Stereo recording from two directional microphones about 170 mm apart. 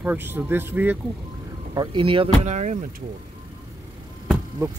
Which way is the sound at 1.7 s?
30° right (ahead or behind).